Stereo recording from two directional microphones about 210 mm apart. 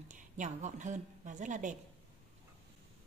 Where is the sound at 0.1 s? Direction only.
35° right (ahead or behind).